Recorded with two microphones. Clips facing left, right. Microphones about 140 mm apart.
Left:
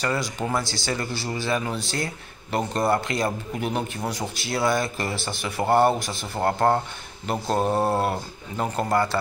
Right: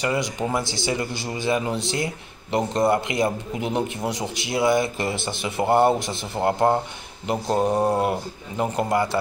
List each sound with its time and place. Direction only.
0.0 s a man's voice: 20° right (ahead or behind)